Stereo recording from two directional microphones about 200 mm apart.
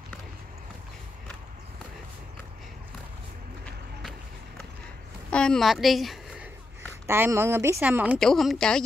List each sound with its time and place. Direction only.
5.3 s a woman's voice: 5° left (ahead or behind)
7.1 s a woman's voice: 15° right (ahead or behind); by 8.8 s 5° left (ahead or behind)